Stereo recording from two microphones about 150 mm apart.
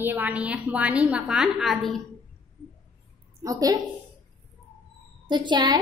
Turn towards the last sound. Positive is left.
turn(degrees=-30)  # may be behind; listen again after turning